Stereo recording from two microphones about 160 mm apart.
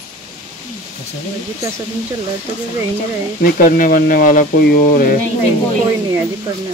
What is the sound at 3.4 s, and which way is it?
Speech, 60° left (ahead or behind).